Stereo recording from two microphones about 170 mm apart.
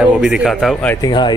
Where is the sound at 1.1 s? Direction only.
25° left (ahead or behind).